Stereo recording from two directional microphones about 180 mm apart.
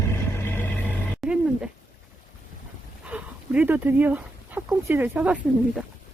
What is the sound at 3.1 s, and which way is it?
Speech, 5° right (ahead or behind).